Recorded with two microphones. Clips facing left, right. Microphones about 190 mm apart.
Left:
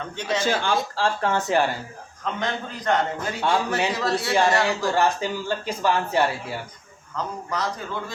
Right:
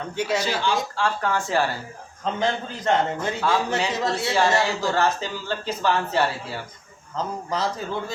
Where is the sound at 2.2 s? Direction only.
25° right (ahead or behind).